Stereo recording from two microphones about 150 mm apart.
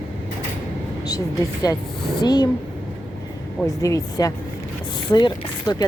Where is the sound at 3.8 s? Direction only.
20° left (ahead or behind).